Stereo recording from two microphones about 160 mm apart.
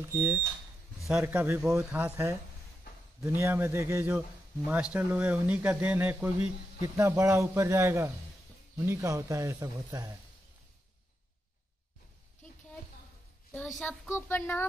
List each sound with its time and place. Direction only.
0.1 s speech: 15° right (ahead or behind)
13.5 s a child's voice: centre (ahead or behind)